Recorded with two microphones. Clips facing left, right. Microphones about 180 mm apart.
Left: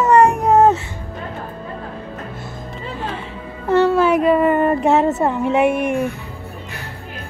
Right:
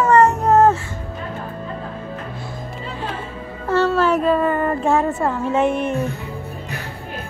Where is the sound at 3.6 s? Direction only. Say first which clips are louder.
Left 3 dB; 15° left (ahead or behind).